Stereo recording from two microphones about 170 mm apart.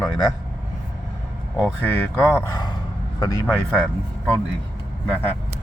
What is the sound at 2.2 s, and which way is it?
Speech, 10° left (ahead or behind).